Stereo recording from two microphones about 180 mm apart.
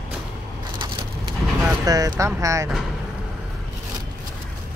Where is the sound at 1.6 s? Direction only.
20° right (ahead or behind).